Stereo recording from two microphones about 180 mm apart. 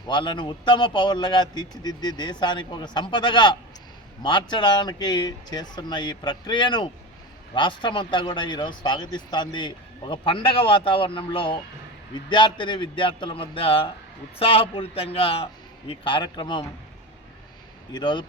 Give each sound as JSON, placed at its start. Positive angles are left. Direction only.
{"t": 0.1, "sound": "a man's voice", "side_deg": 25}
{"t": 17.9, "sound": "speech", "side_deg": 25}